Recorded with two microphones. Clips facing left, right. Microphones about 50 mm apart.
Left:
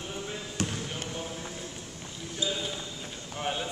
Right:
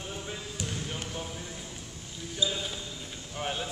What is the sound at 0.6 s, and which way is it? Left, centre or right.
Basketball bounce, left.